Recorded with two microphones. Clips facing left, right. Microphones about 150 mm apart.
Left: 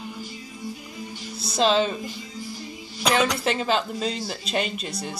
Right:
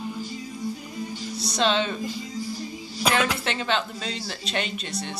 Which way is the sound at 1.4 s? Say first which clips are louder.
Left 3 dB; 30° left (ahead or behind).